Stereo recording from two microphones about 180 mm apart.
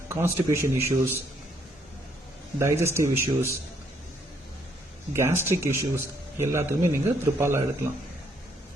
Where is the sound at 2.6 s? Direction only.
15° right (ahead or behind).